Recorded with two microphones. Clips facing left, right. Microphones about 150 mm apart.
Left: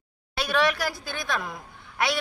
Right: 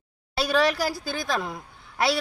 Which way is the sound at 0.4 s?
30° right (ahead or behind).